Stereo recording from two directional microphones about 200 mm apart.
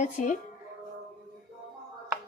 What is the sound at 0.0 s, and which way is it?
Speech, 40° left (ahead or behind).